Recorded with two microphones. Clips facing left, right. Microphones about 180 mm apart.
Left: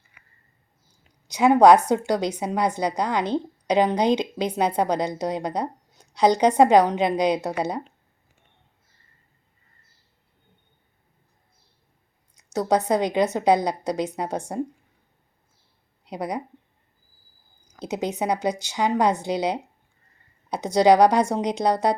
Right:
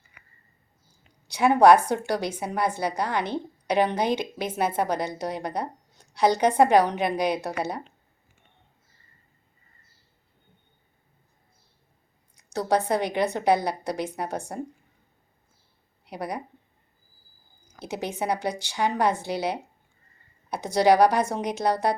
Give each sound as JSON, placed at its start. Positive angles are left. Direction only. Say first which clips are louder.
{"t": 1.3, "sound": "a woman's voice", "louder": "left 2 dB", "side_deg": 20}
{"t": 12.9, "sound": "a woman's voice", "louder": "left 3 dB", "side_deg": 15}
{"t": 16.0, "sound": "a woman's voice", "louder": "left 3 dB", "side_deg": 20}
{"t": 17.7, "sound": "a woman's voice", "louder": "left 4 dB", "side_deg": 15}
{"t": 20.8, "sound": "a woman's voice", "louder": "left 3 dB", "side_deg": 20}